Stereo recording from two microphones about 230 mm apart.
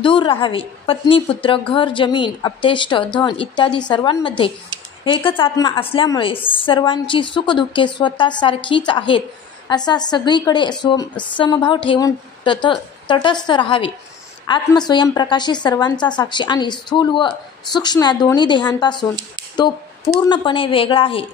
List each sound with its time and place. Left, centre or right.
0.0 s a woman's voice: left